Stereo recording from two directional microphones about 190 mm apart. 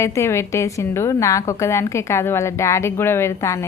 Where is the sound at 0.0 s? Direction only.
15° left (ahead or behind).